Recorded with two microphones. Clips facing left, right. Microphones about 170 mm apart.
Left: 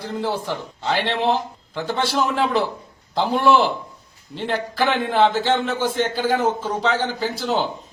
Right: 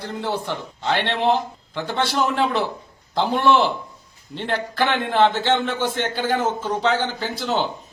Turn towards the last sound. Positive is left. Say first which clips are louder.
# left 1 dB
turn(degrees=0)  # may be behind; listen again after turning